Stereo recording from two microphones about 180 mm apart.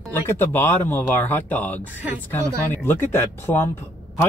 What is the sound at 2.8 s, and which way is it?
Speech, 10° left (ahead or behind).